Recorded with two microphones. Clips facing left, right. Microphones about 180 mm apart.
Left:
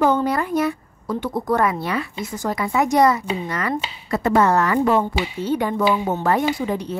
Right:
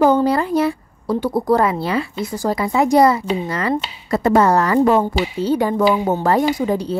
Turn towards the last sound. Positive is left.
turn(degrees=-35)  # may be behind; listen again after turning